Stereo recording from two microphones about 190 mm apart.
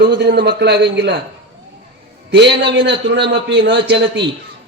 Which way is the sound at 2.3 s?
65° right (ahead or behind).